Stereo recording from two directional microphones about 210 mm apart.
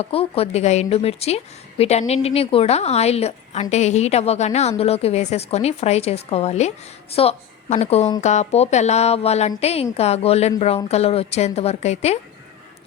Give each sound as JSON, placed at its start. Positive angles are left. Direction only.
{"t": 0.0, "sound": "a woman's voice", "side_deg": 25}